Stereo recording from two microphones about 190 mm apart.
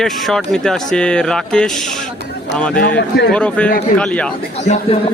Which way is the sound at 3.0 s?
60° left (ahead or behind).